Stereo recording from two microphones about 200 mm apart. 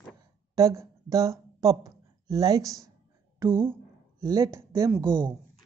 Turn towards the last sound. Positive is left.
turn(degrees=-15)  # may be behind; listen again after turning